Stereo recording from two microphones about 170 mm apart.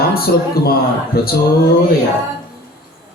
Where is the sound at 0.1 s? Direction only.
60° left (ahead or behind).